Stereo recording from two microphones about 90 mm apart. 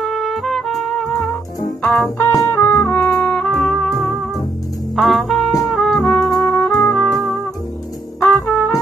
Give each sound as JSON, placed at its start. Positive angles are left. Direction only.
{"t": 0.0, "sound": "music", "side_deg": 0}
{"t": 2.0, "sound": "music", "side_deg": 20}
{"t": 8.5, "sound": "brass instrument", "side_deg": 20}